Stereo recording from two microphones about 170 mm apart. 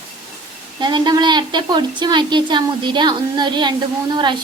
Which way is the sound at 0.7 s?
25° right (ahead or behind).